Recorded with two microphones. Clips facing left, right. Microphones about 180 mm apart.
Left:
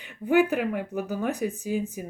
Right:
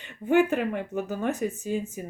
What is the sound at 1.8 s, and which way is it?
Speech, 15° left (ahead or behind).